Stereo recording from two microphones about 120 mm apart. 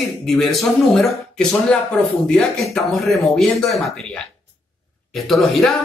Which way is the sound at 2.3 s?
5° left (ahead or behind).